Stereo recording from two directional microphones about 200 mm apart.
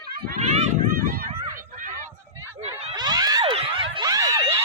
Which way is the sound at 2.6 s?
30° right (ahead or behind).